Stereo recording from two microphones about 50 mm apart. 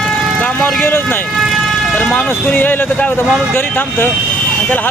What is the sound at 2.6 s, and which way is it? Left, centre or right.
Speech, left.